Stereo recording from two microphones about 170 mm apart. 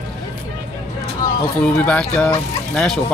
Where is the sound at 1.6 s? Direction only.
5° left (ahead or behind).